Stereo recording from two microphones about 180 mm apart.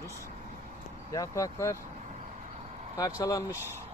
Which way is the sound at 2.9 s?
20° left (ahead or behind).